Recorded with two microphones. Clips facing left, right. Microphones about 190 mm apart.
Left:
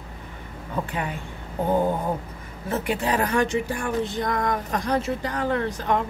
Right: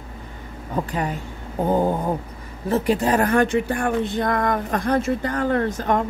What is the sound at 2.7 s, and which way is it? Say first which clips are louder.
A woman's voice: right 5 dB; 40° right (ahead or behind).